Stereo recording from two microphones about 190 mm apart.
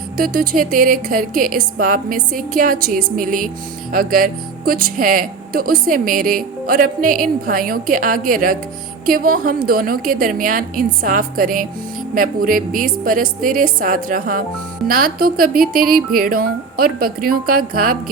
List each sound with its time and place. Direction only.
0.2 s speech: 50° right (ahead or behind)